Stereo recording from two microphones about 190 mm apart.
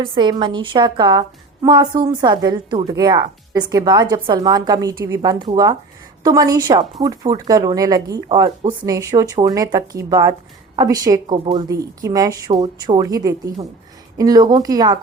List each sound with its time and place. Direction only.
0.0 s speech: 25° right (ahead or behind)